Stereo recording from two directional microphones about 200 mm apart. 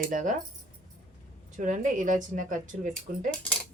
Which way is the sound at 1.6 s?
40° right (ahead or behind).